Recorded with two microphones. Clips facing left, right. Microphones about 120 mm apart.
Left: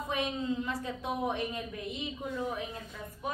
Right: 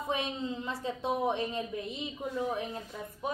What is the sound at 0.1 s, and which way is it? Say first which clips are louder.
A woman's voice: left 1 dB; 25° right (ahead or behind).